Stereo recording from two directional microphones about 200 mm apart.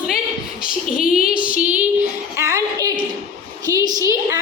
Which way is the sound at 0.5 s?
45° left (ahead or behind).